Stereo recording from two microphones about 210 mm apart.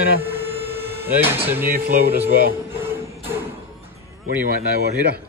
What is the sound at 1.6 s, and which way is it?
Speech, 45° right (ahead or behind).